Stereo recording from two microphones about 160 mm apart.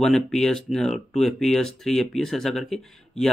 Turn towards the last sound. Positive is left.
turn(degrees=0)  # may be behind; listen again after turning